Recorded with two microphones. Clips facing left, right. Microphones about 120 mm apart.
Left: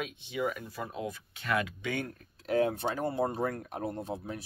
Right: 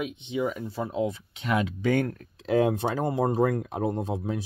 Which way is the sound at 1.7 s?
45° right (ahead or behind).